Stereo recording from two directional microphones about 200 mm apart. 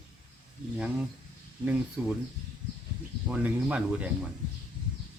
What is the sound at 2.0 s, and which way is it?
Speech, 10° right (ahead or behind).